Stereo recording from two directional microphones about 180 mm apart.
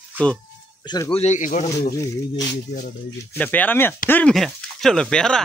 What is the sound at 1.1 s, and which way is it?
Speech, 40° left (ahead or behind).